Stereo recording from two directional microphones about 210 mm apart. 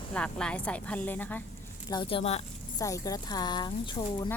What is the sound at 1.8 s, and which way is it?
Speech, 20° left (ahead or behind).